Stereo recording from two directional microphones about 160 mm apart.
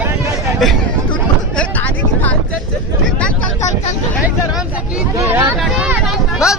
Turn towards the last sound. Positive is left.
turn(degrees=-5)  # may be behind; listen again after turning